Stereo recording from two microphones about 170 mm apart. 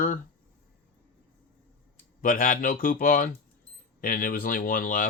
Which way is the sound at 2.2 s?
50° left (ahead or behind).